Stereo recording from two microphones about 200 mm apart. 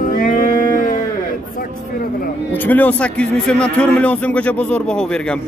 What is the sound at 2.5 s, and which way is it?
A man's voice, 10° left (ahead or behind).